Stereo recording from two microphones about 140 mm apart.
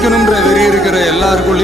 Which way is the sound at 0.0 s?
Centre (ahead or behind).